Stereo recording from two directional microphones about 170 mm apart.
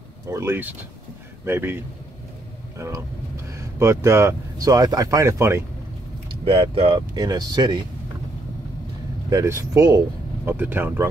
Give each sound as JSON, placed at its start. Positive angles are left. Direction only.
{"t": 0.3, "sound": "speech", "side_deg": -15}
{"t": 3.4, "sound": "speech", "side_deg": -15}
{"t": 6.4, "sound": "speech", "side_deg": -30}
{"t": 9.3, "sound": "speech", "side_deg": -15}